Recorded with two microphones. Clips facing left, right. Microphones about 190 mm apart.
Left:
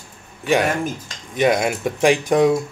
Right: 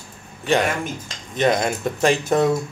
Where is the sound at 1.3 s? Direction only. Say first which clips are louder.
Left 2 dB; 10° left (ahead or behind).